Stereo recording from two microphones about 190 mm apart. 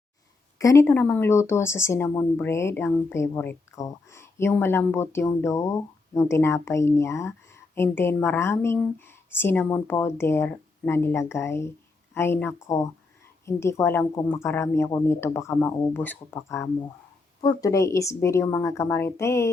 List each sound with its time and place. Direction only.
0.6 s speech: 15° left (ahead or behind)